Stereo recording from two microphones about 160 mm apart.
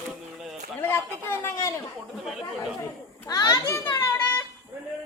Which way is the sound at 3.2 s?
25° left (ahead or behind).